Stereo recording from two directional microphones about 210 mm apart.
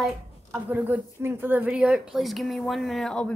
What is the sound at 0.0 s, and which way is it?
Speech, 5° right (ahead or behind).